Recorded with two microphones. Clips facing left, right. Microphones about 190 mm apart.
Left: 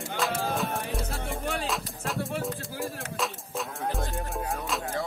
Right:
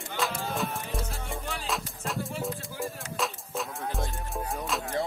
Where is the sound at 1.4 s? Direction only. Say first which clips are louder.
Left 6 dB; 65° left (ahead or behind).